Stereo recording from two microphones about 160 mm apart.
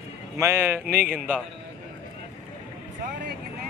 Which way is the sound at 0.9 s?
70° right (ahead or behind).